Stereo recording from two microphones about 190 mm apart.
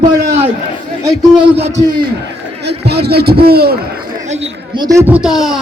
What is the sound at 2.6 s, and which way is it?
Speech, 60° right (ahead or behind).